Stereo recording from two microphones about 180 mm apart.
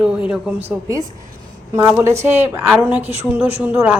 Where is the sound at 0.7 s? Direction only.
15° right (ahead or behind).